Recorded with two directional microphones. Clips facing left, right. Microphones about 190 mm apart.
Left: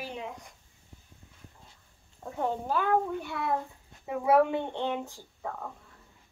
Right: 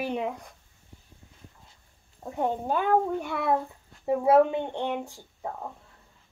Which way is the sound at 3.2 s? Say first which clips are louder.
Right 4 dB; 55° right (ahead or behind).